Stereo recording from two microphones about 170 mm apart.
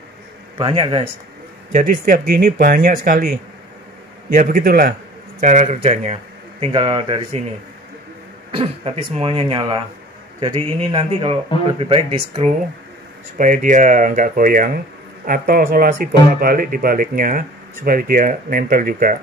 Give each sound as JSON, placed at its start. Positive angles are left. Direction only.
{"t": 0.6, "sound": "speech", "side_deg": -30}
{"t": 1.7, "sound": "speech", "side_deg": -50}
{"t": 5.4, "sound": "speech", "side_deg": -45}
{"t": 6.7, "sound": "speech", "side_deg": -25}
{"t": 8.5, "sound": "speech", "side_deg": -35}
{"t": 13.4, "sound": "speech", "side_deg": -50}